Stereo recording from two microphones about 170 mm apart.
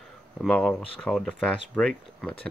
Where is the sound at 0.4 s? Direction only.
5° left (ahead or behind).